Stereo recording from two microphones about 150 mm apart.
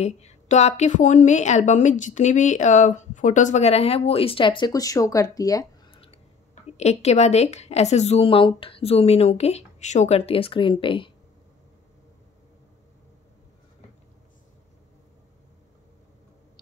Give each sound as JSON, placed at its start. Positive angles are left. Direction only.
{"t": 0.0, "sound": "a woman's voice", "side_deg": 50}
{"t": 5.9, "sound": "a sound", "side_deg": 40}
{"t": 6.8, "sound": "a woman's voice", "side_deg": 45}